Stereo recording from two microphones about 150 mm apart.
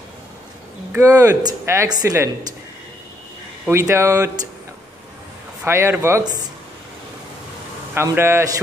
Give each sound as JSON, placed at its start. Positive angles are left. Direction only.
{"t": 0.9, "sound": "a woman's voice", "side_deg": -20}
{"t": 3.6, "sound": "a woman's voice", "side_deg": -15}
{"t": 5.6, "sound": "speech", "side_deg": -15}
{"t": 7.9, "sound": "speech", "side_deg": -15}